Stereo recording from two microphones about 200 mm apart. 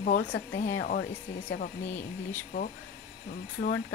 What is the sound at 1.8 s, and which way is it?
Speech, 10° left (ahead or behind).